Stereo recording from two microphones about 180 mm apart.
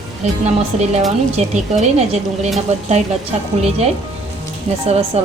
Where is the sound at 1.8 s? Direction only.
40° right (ahead or behind).